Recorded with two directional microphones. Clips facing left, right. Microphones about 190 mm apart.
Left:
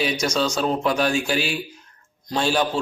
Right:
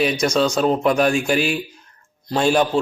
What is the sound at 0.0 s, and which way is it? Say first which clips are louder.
A man's voice: right 4 dB; 5° right (ahead or behind).